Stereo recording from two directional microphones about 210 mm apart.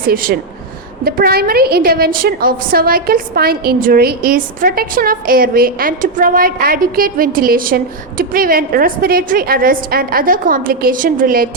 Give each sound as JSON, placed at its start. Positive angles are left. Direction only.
{"t": 0.1, "sound": "a woman's voice", "side_deg": -45}